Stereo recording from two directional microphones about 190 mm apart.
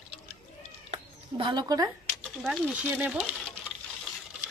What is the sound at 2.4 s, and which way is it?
Speech, 5° right (ahead or behind).